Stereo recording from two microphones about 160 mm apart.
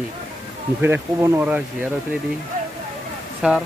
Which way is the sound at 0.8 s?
15° right (ahead or behind).